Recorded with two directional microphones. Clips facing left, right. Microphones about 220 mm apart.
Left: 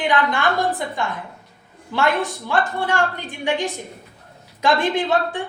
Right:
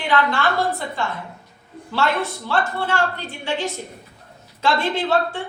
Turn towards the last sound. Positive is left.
turn(degrees=15)  # may be behind; listen again after turning